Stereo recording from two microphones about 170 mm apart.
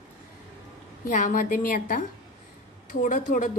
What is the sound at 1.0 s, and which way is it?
A woman's voice, 50° left (ahead or behind).